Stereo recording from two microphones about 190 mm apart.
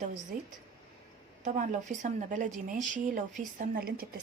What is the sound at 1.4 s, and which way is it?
A woman's voice, 40° right (ahead or behind).